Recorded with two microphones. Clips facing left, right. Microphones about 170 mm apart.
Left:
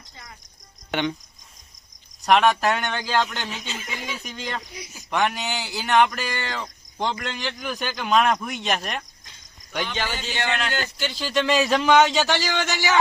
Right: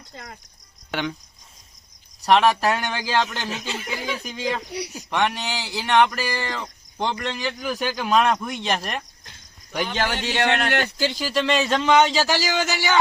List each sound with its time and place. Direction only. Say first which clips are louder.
2.2 s speech: right 1 dB; centre (ahead or behind)
3.7 s speech: right 4 dB; 65° right (ahead or behind)
4.2 s speech: right 5 dB; centre (ahead or behind)
4.7 s speech: right 9 dB; 70° right (ahead or behind)
5.1 s speech: even; centre (ahead or behind)
9.8 s a man's voice: right 5 dB; 40° right (ahead or behind)
10.1 s speech: right 5 dB; 70° right (ahead or behind)
11.1 s speech: even; 5° right (ahead or behind)
11.4 s speech: left 1 dB; 5° left (ahead or behind)